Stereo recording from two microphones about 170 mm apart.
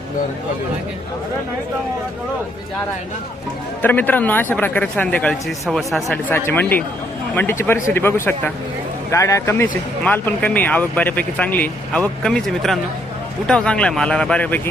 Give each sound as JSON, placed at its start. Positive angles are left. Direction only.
{"t": 3.8, "sound": "speech", "side_deg": 10}
{"t": 6.3, "sound": "speech", "side_deg": 10}